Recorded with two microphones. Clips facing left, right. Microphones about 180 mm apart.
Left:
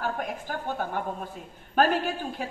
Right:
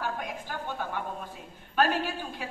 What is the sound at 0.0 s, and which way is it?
A woman's voice, 45° left (ahead or behind).